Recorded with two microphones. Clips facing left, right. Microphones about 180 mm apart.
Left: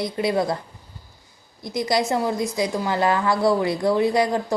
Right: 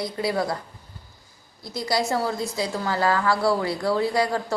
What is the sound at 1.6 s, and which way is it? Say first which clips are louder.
A woman's voice: left 3 dB; 20° left (ahead or behind).